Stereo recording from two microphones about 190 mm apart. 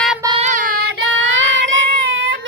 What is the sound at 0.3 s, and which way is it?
Child singing, 35° right (ahead or behind).